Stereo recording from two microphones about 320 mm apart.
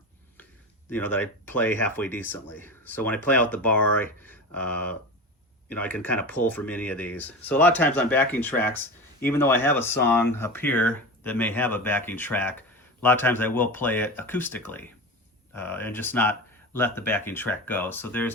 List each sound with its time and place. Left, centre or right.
0.9 s speech: centre